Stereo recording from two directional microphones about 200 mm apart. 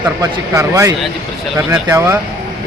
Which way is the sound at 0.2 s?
15° right (ahead or behind).